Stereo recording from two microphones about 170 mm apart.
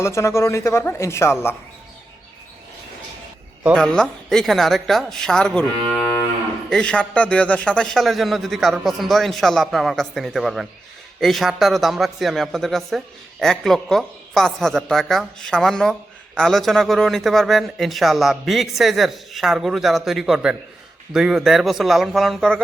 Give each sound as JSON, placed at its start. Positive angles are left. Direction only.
{"t": 0.0, "sound": "speech", "side_deg": 15}
{"t": 3.8, "sound": "a woman's voice", "side_deg": 5}
{"t": 6.7, "sound": "a woman's voice", "side_deg": 5}